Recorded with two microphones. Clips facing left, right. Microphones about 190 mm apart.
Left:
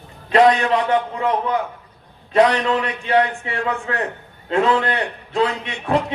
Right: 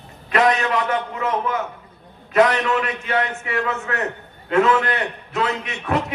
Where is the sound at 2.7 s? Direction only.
30° left (ahead or behind).